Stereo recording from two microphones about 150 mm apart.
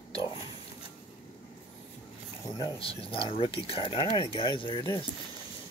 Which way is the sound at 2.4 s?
25° left (ahead or behind).